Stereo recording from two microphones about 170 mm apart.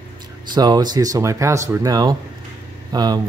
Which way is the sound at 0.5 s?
25° right (ahead or behind).